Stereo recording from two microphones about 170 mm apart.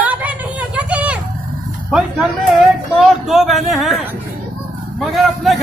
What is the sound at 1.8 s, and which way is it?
Speech, 5° right (ahead or behind).